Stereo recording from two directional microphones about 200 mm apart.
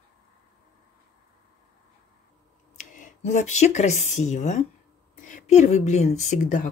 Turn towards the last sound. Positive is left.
turn(degrees=40)  # may be behind; listen again after turning